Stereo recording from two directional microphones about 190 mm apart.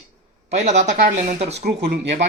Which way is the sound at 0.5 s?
35° right (ahead or behind).